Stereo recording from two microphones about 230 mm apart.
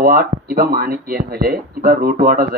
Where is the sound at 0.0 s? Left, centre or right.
Right.